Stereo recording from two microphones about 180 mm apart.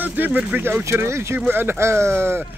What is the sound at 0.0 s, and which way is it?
Speech, 10° right (ahead or behind).